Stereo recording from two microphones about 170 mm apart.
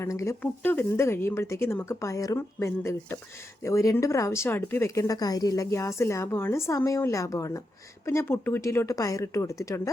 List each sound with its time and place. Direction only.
0.0 s speech: 15° left (ahead or behind)